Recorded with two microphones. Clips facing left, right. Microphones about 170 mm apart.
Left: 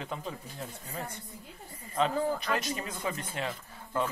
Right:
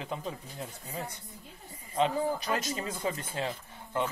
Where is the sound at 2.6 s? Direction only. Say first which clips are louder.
Right 1 dB; 35° right (ahead or behind).